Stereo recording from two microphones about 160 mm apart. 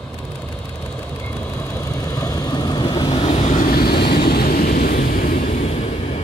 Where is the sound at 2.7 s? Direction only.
30° left (ahead or behind).